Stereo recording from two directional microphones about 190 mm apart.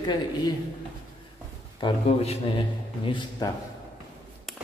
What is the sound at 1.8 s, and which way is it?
Speech, 25° left (ahead or behind).